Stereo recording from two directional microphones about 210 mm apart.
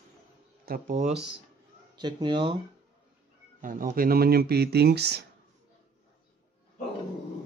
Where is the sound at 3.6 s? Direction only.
40° right (ahead or behind).